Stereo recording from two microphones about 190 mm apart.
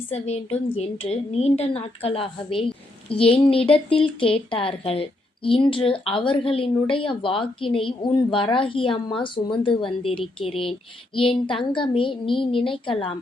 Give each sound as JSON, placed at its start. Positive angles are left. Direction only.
{"t": 0.1, "sound": "a woman's voice", "side_deg": 35}